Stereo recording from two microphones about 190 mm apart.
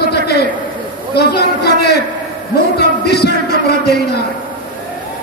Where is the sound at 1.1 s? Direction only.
60° left (ahead or behind).